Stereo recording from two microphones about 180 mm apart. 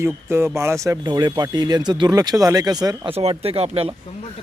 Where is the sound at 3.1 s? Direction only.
35° right (ahead or behind).